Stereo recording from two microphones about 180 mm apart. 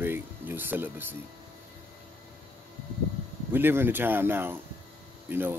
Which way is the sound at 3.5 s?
10° right (ahead or behind).